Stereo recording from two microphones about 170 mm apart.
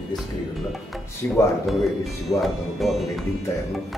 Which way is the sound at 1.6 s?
Centre (ahead or behind).